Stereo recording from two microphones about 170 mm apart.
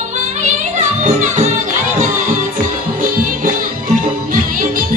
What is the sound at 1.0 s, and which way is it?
Music, 45° right (ahead or behind).